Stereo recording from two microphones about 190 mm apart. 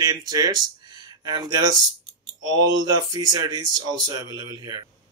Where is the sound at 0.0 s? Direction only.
20° right (ahead or behind).